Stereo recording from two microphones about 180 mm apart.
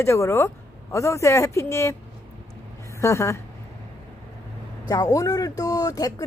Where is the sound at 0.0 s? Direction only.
15° left (ahead or behind).